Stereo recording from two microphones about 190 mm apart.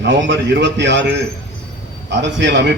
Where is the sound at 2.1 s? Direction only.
70° right (ahead or behind).